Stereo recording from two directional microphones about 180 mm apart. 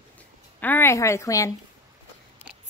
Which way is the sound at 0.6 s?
10° left (ahead or behind).